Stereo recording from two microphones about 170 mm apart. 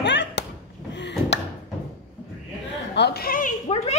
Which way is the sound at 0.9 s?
90° left.